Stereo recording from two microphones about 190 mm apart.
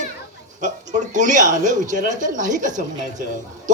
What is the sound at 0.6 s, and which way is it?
Speech, 40° right (ahead or behind).